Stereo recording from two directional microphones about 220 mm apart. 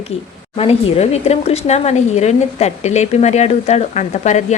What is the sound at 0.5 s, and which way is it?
Speech, 25° left (ahead or behind).